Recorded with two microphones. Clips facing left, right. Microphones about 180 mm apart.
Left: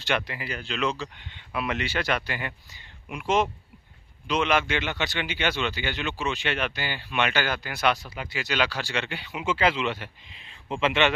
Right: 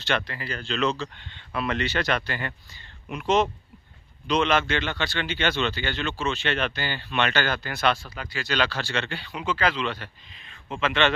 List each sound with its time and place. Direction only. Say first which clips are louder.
0.0 s a man's voice: even; 15° left (ahead or behind)